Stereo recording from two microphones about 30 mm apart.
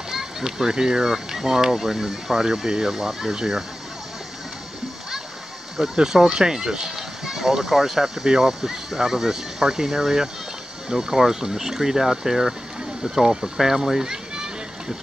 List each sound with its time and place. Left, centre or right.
0.1 s speech: centre
5.8 s speech: centre
14.0 s a sound: right